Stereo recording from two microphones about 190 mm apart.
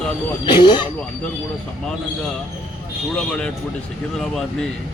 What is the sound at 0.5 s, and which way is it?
Speech, 25° left (ahead or behind).